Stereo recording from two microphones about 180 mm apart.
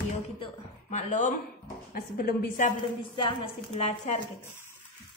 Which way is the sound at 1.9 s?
55° left (ahead or behind).